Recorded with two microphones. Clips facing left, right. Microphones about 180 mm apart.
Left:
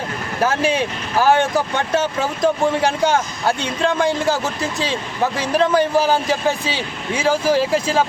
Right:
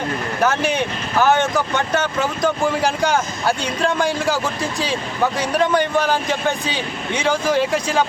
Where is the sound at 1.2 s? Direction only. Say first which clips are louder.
Left 1 dB; 30° left (ahead or behind).